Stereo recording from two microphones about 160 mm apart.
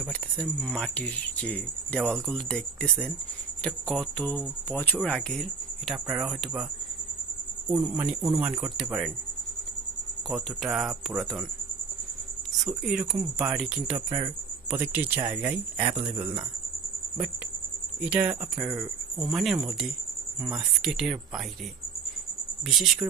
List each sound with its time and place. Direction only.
0.0 s speech: 5° left (ahead or behind)
7.7 s speech: 15° right (ahead or behind)
10.3 s speech: centre (ahead or behind)
12.6 s speech: 5° right (ahead or behind)
13.9 s speech: 20° right (ahead or behind)
15.8 s speech: 40° right (ahead or behind)
18.0 s speech: 10° right (ahead or behind)
22.7 s speech: centre (ahead or behind)